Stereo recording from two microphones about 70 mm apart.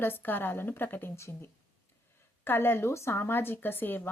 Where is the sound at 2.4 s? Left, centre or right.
Left.